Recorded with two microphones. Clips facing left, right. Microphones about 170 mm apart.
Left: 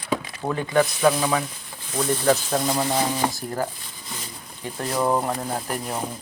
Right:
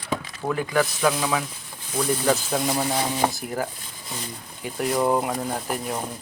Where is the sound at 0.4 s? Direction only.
10° left (ahead or behind).